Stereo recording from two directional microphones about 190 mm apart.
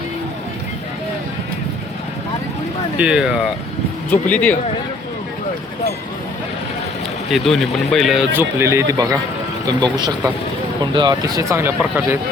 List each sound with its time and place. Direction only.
3.0 s speech: 5° right (ahead or behind)
4.1 s speech: 10° left (ahead or behind)
7.3 s speech: centre (ahead or behind)